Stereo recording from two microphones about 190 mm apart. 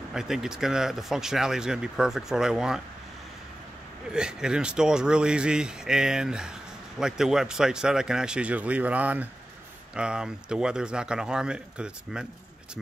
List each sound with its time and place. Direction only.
0.1 s speech: centre (ahead or behind)
4.1 s speech: 5° right (ahead or behind)